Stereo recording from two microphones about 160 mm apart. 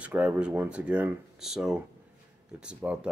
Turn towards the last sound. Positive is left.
turn(degrees=-5)  # may be behind; listen again after turning